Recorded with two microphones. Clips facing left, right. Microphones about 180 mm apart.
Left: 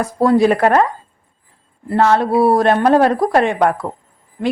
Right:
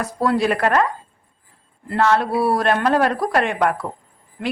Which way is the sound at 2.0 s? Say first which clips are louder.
Left 4 dB; 50° left (ahead or behind).